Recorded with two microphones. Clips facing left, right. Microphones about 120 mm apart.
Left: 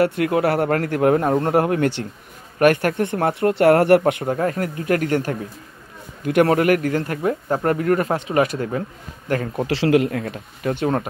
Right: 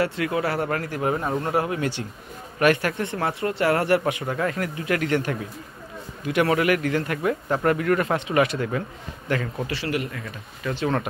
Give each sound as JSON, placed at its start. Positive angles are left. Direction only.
{"t": 0.0, "sound": "speech", "side_deg": 55}
{"t": 4.3, "sound": "speech", "side_deg": 35}
{"t": 6.5, "sound": "a man's voice", "side_deg": 45}
{"t": 9.7, "sound": "speech", "side_deg": 90}